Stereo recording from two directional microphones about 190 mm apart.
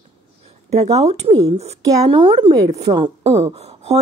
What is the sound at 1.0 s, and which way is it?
Speech, 35° right (ahead or behind).